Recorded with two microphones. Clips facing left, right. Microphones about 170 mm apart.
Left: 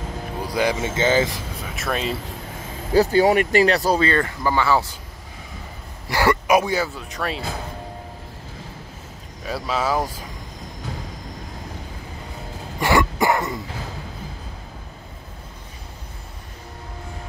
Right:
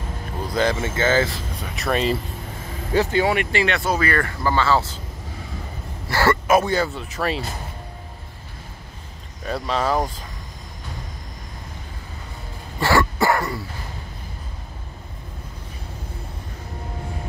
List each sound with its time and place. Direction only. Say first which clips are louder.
0.5 s speech: right 1 dB; 10° left (ahead or behind)
1.6 s speech: right 4 dB; centre (ahead or behind)
2.9 s speech: left 4 dB; 35° left (ahead or behind); by 4.9 s 15° left (ahead or behind)
6.0 s speech: even; 15° left (ahead or behind); by 7.4 s centre (ahead or behind)
9.5 s speech: right 1 dB; 5° left (ahead or behind)
12.8 s cough: even; 20° left (ahead or behind)